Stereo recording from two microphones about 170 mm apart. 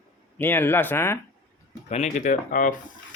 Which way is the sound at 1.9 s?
40° left (ahead or behind).